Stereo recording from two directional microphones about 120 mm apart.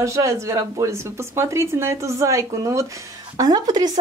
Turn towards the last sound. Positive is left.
turn(degrees=-35)  # may be behind; listen again after turning